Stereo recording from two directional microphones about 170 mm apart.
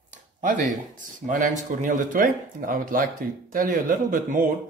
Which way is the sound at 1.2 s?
50° right (ahead or behind).